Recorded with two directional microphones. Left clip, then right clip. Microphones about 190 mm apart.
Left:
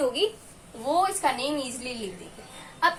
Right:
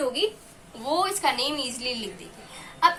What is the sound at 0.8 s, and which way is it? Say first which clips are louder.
Speech: left 1 dB; 25° left (ahead or behind).